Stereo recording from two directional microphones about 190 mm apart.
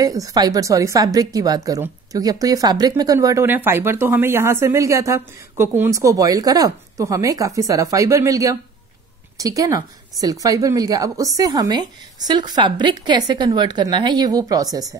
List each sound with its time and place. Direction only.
0.0 s a woman's voice: 20° right (ahead or behind)